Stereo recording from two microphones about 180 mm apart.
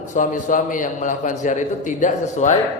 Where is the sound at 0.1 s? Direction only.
45° left (ahead or behind).